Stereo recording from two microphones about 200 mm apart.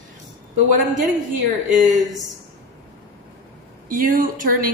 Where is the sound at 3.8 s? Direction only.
45° right (ahead or behind).